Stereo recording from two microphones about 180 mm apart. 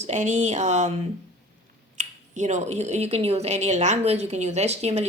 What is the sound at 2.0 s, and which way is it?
Speech, 40° right (ahead or behind).